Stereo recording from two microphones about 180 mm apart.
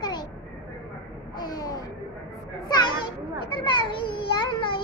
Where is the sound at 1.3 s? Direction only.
20° left (ahead or behind).